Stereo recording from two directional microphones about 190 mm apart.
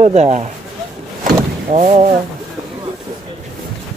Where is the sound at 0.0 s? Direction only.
35° right (ahead or behind).